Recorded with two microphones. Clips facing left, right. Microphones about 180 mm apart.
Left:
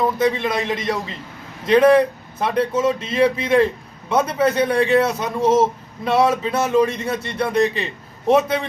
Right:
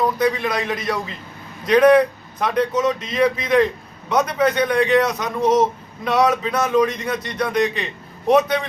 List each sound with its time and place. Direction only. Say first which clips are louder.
0.2 s speech: left 1 dB; 25° left (ahead or behind)
5.4 s speech: even; 10° left (ahead or behind)
6.1 s speech: left 1 dB; 25° left (ahead or behind)